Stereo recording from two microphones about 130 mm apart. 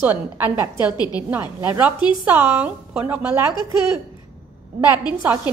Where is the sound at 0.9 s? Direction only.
30° left (ahead or behind).